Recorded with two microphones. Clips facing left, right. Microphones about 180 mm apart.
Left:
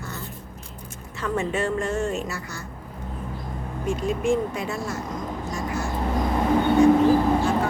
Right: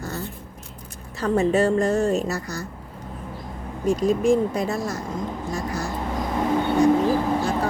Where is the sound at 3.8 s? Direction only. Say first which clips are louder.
Right 5 dB; 40° right (ahead or behind).